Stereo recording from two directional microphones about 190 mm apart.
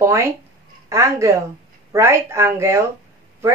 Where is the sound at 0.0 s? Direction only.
15° right (ahead or behind).